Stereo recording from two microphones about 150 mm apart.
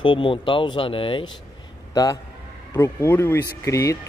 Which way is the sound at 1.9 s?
25° left (ahead or behind).